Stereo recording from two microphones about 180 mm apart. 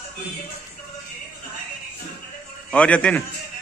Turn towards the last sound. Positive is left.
turn(degrees=5)  # may be behind; listen again after turning